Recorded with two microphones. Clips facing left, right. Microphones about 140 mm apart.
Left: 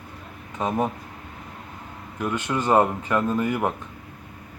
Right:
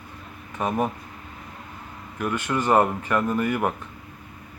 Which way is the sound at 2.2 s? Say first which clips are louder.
Even; 15° left (ahead or behind).